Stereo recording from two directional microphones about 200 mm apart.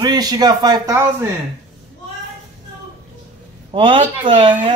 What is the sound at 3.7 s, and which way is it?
Speech, 25° right (ahead or behind).